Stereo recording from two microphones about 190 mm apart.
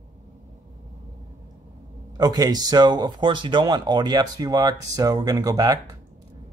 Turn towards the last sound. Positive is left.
turn(degrees=-20)  # may be behind; listen again after turning